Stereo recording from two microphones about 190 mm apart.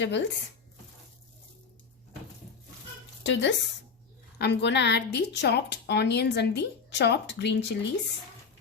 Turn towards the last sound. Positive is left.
turn(degrees=65)  # may be behind; listen again after turning